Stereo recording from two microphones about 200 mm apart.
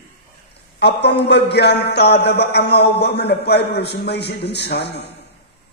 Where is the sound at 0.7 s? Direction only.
55° left (ahead or behind).